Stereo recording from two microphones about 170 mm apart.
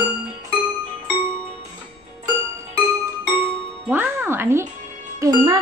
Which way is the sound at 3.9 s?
10° right (ahead or behind).